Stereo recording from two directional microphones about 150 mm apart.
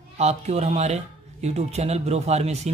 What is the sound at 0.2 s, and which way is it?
Speech, 45° right (ahead or behind).